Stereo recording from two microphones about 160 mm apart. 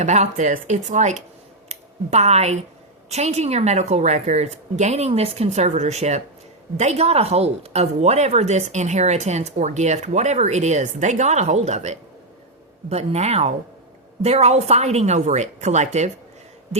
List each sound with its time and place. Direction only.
0.0 s speech: 45° right (ahead or behind)